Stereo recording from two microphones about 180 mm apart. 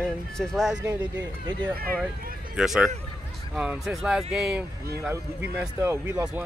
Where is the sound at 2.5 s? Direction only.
5° right (ahead or behind).